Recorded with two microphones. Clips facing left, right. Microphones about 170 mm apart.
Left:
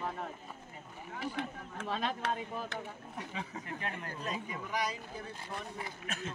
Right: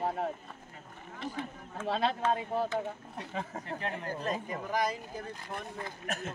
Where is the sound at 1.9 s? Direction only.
90° right.